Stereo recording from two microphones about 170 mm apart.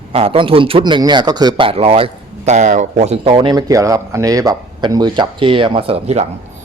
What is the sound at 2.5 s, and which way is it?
Speech, 45° right (ahead or behind).